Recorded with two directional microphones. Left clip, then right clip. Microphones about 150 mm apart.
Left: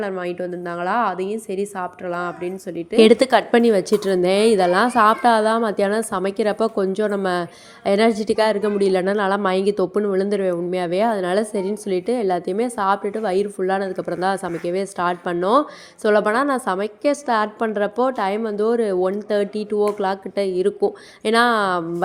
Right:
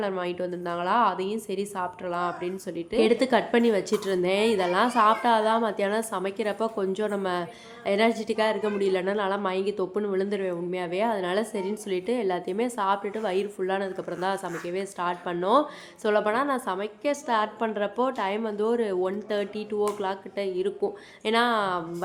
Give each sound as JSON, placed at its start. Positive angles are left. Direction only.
{"t": 0.0, "sound": "a woman's voice", "side_deg": 20}
{"t": 3.0, "sound": "a woman's voice", "side_deg": 50}